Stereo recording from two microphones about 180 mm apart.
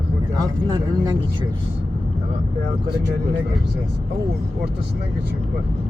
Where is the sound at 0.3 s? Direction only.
20° right (ahead or behind).